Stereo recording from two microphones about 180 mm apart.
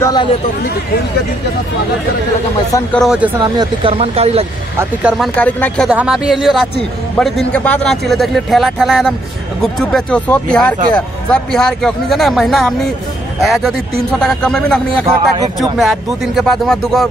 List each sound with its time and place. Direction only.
0.0 s speech: 20° left (ahead or behind)
2.9 s a man's voice: centre (ahead or behind)
3.5 s speech: 30° right (ahead or behind)
4.7 s a man's voice: 5° right (ahead or behind)
5.9 s a man's voice: 5° right (ahead or behind)